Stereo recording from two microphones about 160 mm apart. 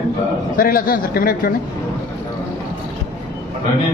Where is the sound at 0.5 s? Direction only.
60° left (ahead or behind).